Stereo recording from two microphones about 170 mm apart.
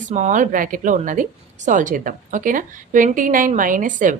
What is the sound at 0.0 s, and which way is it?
Speech, 45° right (ahead or behind).